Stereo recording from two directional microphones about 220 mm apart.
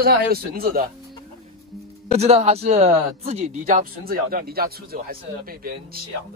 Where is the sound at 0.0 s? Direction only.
45° right (ahead or behind).